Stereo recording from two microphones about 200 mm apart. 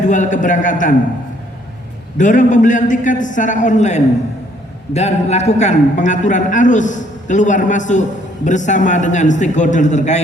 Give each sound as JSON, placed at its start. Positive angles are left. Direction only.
{"t": 0.0, "sound": "a man's voice", "side_deg": 40}
{"t": 2.1, "sound": "a man's voice", "side_deg": 40}